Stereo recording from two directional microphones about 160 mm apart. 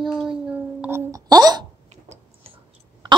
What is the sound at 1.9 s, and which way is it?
Tick-tock, 45° right (ahead or behind).